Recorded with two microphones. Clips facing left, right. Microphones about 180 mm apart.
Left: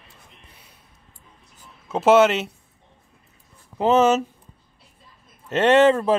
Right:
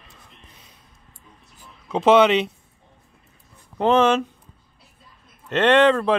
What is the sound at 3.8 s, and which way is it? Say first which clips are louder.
Speech: even; 5° left (ahead or behind).